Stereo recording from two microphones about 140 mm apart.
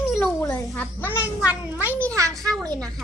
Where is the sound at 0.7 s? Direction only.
10° left (ahead or behind).